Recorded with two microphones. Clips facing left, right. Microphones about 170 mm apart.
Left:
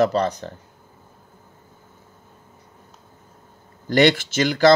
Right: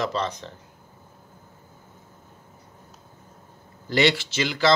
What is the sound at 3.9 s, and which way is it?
Speech, 50° left (ahead or behind).